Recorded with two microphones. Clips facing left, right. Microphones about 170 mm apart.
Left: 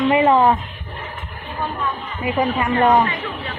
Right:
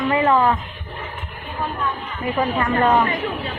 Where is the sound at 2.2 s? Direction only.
15° left (ahead or behind).